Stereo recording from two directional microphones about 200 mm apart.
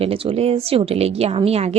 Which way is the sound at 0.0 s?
30° right (ahead or behind).